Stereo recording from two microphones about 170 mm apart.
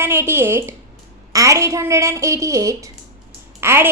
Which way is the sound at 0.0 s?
15° right (ahead or behind).